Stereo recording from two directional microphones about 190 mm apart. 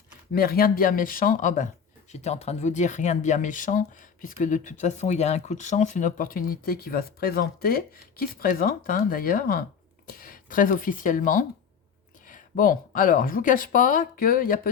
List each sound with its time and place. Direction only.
0.3 s speech: 50° left (ahead or behind)